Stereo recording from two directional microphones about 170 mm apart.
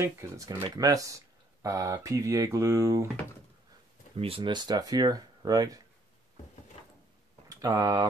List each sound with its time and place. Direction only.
0.0 s speech: 20° right (ahead or behind)
4.2 s speech: 30° right (ahead or behind)
7.4 s speech: 20° right (ahead or behind)